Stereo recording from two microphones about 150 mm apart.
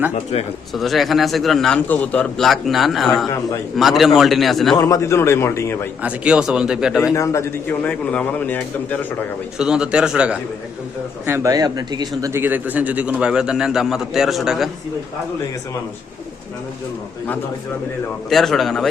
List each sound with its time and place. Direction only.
0.1 s speech: 45° left (ahead or behind)
0.7 s a man's voice: centre (ahead or behind)
4.8 s a man's voice: 20° left (ahead or behind)
6.0 s a man's voice: 10° right (ahead or behind)
7.1 s a man's voice: 20° left (ahead or behind)
9.6 s a man's voice: 5° right (ahead or behind)
11.3 s a man's voice: 20° right (ahead or behind)
12.3 s a man's voice: 15° right (ahead or behind)
18.3 s a man's voice: centre (ahead or behind)